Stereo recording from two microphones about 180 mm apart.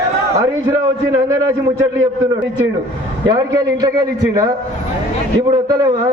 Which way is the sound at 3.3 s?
20° right (ahead or behind).